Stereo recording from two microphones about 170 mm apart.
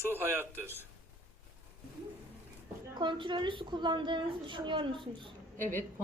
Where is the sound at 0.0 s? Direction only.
15° right (ahead or behind).